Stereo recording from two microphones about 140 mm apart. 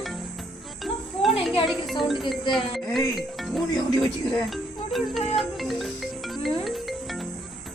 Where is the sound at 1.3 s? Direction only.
40° left (ahead or behind).